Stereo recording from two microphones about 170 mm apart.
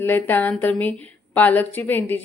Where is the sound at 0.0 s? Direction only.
10° left (ahead or behind).